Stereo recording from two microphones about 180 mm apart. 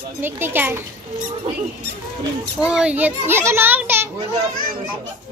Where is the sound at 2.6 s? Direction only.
5° right (ahead or behind).